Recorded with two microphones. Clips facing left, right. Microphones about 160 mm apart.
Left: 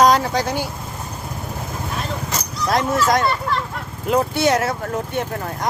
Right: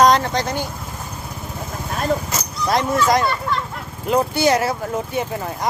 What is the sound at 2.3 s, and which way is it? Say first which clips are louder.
Speech: even; centre (ahead or behind).